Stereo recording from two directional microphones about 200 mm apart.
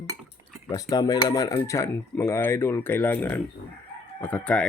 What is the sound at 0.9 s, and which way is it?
Speech, 20° left (ahead or behind).